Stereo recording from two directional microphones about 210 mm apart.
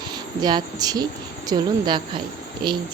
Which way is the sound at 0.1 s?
20° right (ahead or behind).